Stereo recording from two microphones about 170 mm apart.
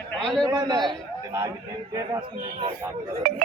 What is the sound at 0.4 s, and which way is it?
A man's voice, 25° right (ahead or behind).